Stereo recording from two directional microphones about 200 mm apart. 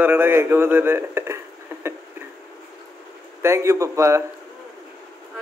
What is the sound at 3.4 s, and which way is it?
Speech, 15° right (ahead or behind).